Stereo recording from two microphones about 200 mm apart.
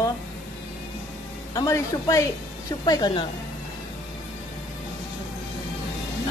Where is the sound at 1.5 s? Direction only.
15° left (ahead or behind).